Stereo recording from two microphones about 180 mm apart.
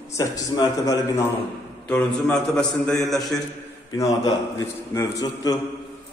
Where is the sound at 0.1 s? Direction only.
20° left (ahead or behind).